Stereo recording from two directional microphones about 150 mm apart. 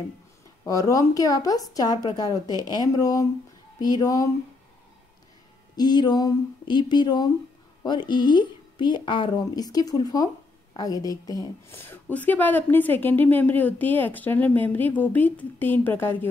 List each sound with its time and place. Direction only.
0.7 s a woman's voice: 25° left (ahead or behind)
5.8 s a woman's voice: 30° left (ahead or behind)